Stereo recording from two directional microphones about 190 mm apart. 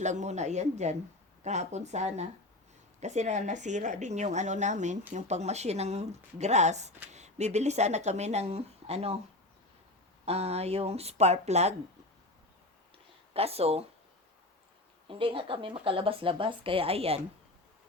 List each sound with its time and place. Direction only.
0.0 s speech: 40° right (ahead or behind)
10.2 s speech: 35° right (ahead or behind)
13.3 s speech: 30° right (ahead or behind)
15.0 s speech: 25° right (ahead or behind)